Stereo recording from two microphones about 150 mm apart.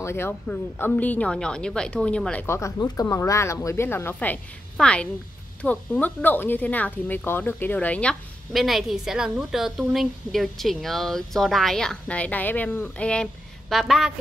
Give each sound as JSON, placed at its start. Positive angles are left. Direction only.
{"t": 0.0, "sound": "speech", "side_deg": 15}
{"t": 2.4, "sound": "speech", "side_deg": 20}